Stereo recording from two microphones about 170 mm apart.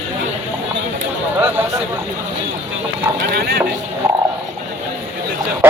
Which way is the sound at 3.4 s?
65° right (ahead or behind).